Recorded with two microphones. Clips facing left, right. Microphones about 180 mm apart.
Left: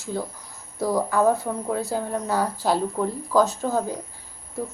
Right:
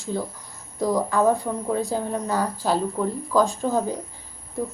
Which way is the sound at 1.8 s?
15° right (ahead or behind).